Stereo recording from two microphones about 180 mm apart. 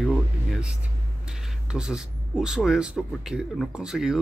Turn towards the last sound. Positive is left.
turn(degrees=-5)  # may be behind; listen again after turning